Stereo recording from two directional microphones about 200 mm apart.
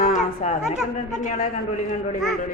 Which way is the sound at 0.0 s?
40° left (ahead or behind).